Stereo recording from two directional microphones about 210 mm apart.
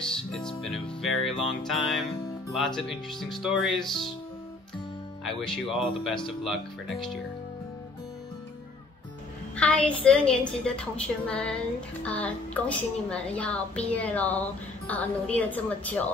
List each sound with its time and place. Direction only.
0.0 s music: centre (ahead or behind)
2.5 s speech: centre (ahead or behind)
5.2 s speech: centre (ahead or behind)
9.6 s a woman's voice: 5° left (ahead or behind)